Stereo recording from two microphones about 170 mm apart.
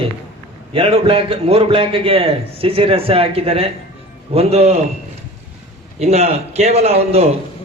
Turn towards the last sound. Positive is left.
turn(degrees=-35)  # may be behind; listen again after turning